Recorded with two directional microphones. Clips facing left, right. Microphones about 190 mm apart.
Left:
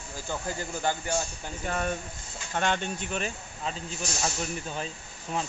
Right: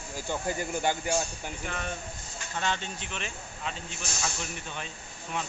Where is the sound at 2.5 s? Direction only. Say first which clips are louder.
Left 4 dB; 55° left (ahead or behind).